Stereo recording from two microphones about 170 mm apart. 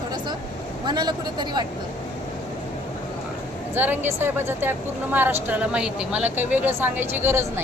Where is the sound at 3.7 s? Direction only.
10° right (ahead or behind).